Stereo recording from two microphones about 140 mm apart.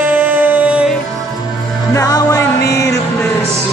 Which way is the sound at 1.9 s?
25° left (ahead or behind).